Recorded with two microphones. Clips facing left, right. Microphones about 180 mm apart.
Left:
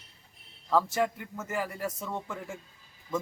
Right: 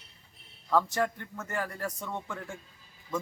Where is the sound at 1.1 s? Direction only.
5° left (ahead or behind).